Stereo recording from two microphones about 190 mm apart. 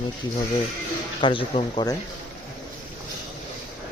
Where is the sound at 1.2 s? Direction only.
25° left (ahead or behind).